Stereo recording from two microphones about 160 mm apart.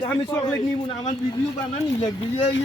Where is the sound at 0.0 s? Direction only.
30° left (ahead or behind).